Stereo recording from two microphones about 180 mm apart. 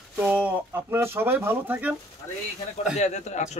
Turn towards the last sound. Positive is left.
turn(degrees=40)  # may be behind; listen again after turning